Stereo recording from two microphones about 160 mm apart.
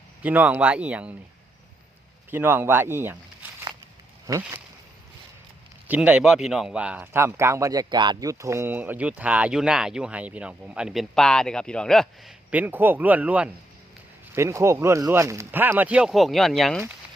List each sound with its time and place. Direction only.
0.2 s speech: 10° right (ahead or behind)
2.3 s speech: 10° right (ahead or behind)
5.9 s speech: 5° right (ahead or behind)
12.5 s speech: 10° right (ahead or behind)